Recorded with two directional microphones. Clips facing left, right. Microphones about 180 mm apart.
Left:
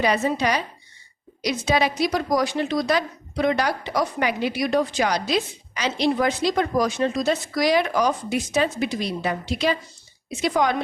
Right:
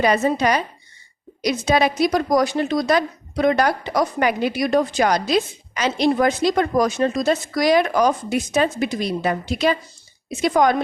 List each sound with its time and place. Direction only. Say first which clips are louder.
0.0 s a woman's voice: right 3 dB; 45° right (ahead or behind)